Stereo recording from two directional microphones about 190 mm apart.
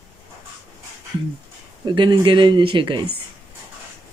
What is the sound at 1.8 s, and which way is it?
Speech, 25° right (ahead or behind).